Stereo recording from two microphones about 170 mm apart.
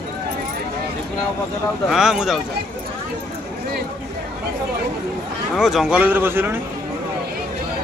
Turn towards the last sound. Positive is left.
turn(degrees=-15)  # may be behind; listen again after turning